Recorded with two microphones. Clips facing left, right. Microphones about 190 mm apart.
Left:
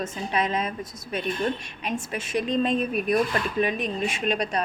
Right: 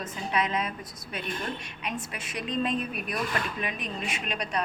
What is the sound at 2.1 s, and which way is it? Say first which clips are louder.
A woman's voice: left 8 dB; 25° left (ahead or behind).